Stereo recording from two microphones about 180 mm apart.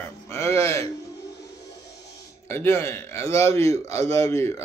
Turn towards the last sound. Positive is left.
turn(degrees=15)  # may be behind; listen again after turning